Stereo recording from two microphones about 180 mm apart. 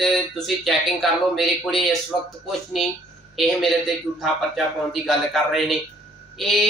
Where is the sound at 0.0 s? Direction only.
Centre (ahead or behind).